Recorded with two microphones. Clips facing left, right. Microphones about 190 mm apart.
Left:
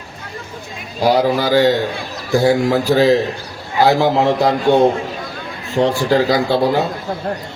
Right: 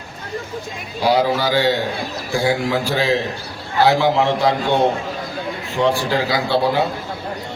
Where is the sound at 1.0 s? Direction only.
45° left (ahead or behind).